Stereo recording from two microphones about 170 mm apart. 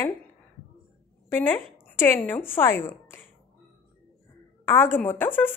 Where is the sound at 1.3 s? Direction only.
15° left (ahead or behind).